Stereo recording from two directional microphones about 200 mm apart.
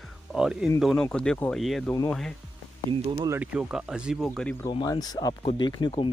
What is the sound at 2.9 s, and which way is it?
Speech, 25° right (ahead or behind).